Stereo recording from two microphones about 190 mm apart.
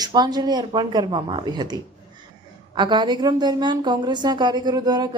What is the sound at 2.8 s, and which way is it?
A woman's voice, 25° right (ahead or behind).